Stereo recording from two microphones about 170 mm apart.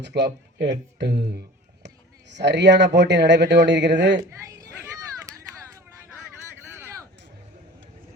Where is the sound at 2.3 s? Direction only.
90° right.